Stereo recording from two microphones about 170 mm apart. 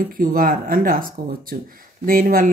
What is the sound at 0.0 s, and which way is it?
Speech, 55° right (ahead or behind).